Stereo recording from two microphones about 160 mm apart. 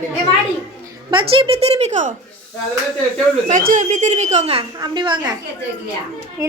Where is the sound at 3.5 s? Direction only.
50° right (ahead or behind); by 5.4 s 30° right (ahead or behind).